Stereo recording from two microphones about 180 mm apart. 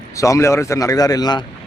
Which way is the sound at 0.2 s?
15° left (ahead or behind).